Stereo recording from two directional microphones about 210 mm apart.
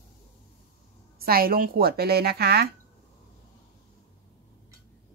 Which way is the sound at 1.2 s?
45° right (ahead or behind).